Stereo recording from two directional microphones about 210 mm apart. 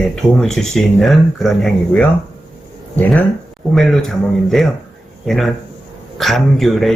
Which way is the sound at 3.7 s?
Centre (ahead or behind).